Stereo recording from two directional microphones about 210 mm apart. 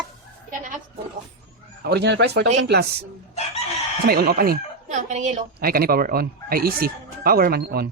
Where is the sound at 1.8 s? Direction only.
50° right (ahead or behind).